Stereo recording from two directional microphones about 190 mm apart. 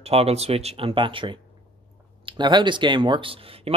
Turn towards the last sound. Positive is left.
turn(degrees=-30)  # may be behind; listen again after turning